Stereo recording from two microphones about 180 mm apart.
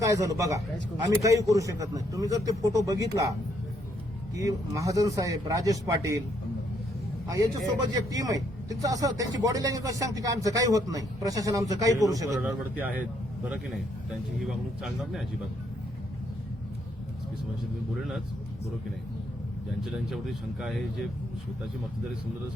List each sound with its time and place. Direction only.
0.0 s a man's voice: 20° right (ahead or behind)
4.4 s speech: 20° right (ahead or behind)
7.3 s speech: 20° right (ahead or behind)
12.3 s speech: centre (ahead or behind)
19.8 s speech: centre (ahead or behind)